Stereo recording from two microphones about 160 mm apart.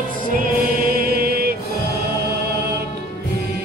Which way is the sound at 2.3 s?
90° right.